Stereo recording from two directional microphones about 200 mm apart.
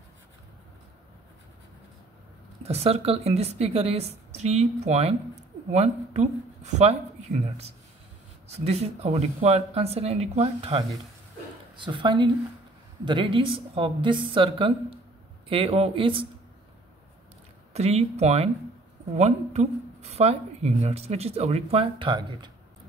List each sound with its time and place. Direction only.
2.6 s a woman's voice: 30° right (ahead or behind)
17.7 s a woman's voice: 30° right (ahead or behind)